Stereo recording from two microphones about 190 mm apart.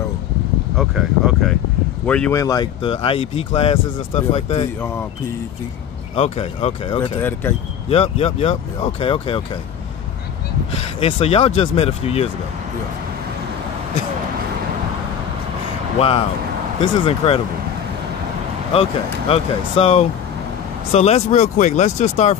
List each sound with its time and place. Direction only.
0.7 s speech: centre (ahead or behind)
2.3 s speech: 20° left (ahead or behind)
6.1 s speech: 35° left (ahead or behind)
7.0 s speech: 10° left (ahead or behind)
7.9 s speech: 30° left (ahead or behind)
11.0 s speech: 30° left (ahead or behind)
16.8 s speech: 30° left (ahead or behind)
18.7 s speech: 30° left (ahead or behind)